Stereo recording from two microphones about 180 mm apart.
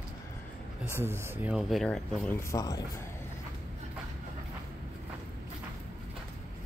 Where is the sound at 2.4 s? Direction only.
15° left (ahead or behind).